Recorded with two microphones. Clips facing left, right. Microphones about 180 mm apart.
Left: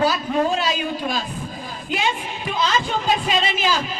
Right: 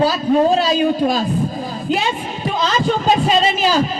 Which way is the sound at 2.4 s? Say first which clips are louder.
Right 5 dB; 40° right (ahead or behind).